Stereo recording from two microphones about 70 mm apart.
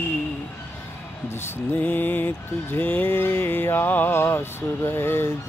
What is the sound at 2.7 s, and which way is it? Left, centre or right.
Speech, left.